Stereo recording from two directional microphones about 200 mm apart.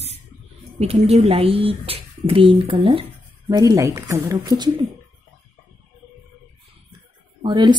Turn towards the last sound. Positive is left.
turn(degrees=-20)  # may be behind; listen again after turning